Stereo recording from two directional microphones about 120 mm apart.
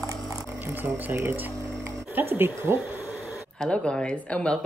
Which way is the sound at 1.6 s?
25° right (ahead or behind).